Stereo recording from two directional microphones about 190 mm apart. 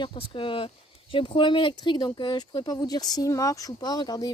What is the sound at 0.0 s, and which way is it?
Speech, 30° left (ahead or behind).